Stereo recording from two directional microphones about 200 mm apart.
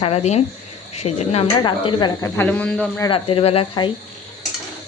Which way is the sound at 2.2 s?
10° left (ahead or behind).